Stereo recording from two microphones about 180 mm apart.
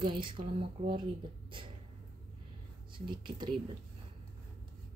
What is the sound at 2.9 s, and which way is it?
Speech, 25° right (ahead or behind).